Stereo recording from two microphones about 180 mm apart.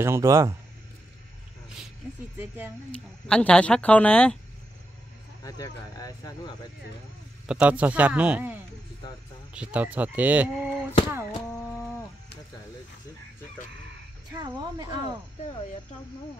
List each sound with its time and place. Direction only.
0.0 s speech: 15° right (ahead or behind)
2.3 s speech: 10° right (ahead or behind)
3.3 s speech: 5° left (ahead or behind)
5.4 s speech: 20° left (ahead or behind)
7.4 s speech: 5° right (ahead or behind)
14.4 s speech: 25° right (ahead or behind)